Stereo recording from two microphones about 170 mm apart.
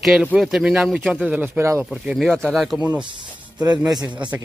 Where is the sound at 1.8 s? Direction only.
Centre (ahead or behind).